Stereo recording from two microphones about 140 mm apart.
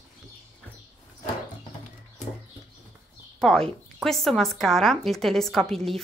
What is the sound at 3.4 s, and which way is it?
A woman's voice, 5° left (ahead or behind).